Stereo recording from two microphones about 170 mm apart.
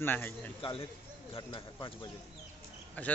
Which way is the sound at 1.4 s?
25° left (ahead or behind).